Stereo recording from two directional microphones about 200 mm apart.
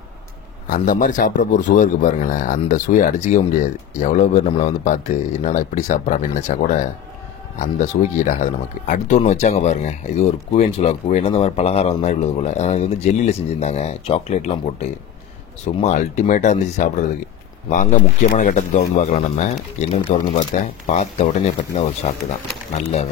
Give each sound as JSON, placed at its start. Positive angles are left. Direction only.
{"t": 0.7, "sound": "speech", "side_deg": 40}